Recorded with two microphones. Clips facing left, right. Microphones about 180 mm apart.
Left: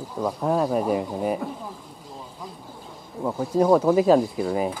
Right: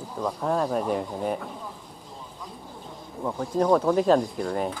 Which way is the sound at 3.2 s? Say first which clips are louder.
Left 3 dB; 10° left (ahead or behind).